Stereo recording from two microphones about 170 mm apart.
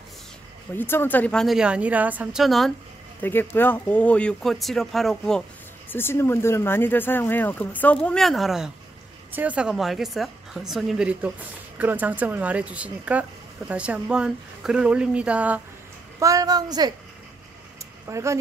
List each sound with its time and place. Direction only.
0.7 s a woman's voice: 10° left (ahead or behind)
3.2 s speech: 10° left (ahead or behind)
5.9 s a woman's voice: 15° left (ahead or behind); by 15.6 s 10° right (ahead or behind)
16.2 s a woman's voice: 20° right (ahead or behind)
18.0 s speech: 15° right (ahead or behind)